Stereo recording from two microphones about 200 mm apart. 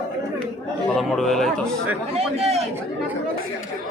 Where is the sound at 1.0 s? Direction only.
Centre (ahead or behind).